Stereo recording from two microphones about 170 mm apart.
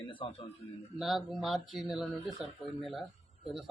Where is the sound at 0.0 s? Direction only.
30° left (ahead or behind).